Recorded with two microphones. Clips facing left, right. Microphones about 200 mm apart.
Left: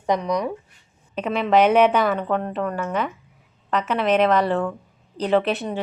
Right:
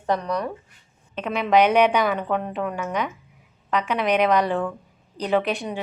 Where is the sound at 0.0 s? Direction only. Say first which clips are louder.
Left 2 dB; 10° left (ahead or behind).